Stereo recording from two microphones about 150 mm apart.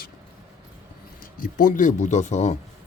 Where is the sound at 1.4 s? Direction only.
65° left (ahead or behind); by 2.6 s 50° left (ahead or behind).